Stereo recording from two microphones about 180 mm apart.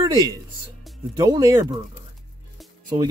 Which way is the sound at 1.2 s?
20° right (ahead or behind).